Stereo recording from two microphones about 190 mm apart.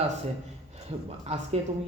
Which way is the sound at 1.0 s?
35° right (ahead or behind).